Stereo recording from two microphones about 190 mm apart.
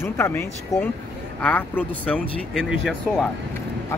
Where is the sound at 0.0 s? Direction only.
10° left (ahead or behind).